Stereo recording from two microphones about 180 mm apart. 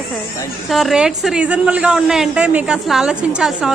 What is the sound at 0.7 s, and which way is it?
A woman's voice, centre (ahead or behind).